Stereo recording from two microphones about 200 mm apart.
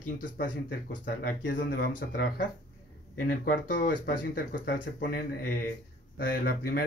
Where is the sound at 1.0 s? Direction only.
45° left (ahead or behind).